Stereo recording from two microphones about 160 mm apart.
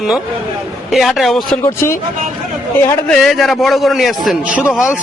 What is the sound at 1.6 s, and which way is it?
Speech, 15° left (ahead or behind).